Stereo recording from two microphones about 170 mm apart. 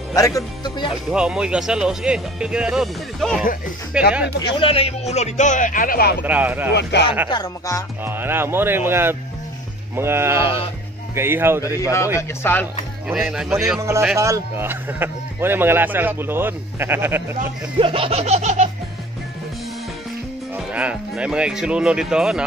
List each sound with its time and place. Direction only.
0.1 s speech: 20° left (ahead or behind)
1.1 s speech: 5° right (ahead or behind)
4.4 s speech: 30° left (ahead or behind); by 6.1 s 60° left (ahead or behind)
6.2 s speech: 10° right (ahead or behind)
6.7 s speech: 85° left
7.2 s speech: 25° left (ahead or behind)
8.0 s speech: 10° right (ahead or behind)
12.2 s speech: 10° left (ahead or behind)
13.1 s speech: 5° right (ahead or behind)
13.7 s speech: 15° right (ahead or behind)
17.7 s laughter: 30° right (ahead or behind)
20.5 s speech: 10° right (ahead or behind)